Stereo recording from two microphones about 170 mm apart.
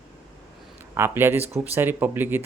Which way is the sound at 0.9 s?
15° right (ahead or behind).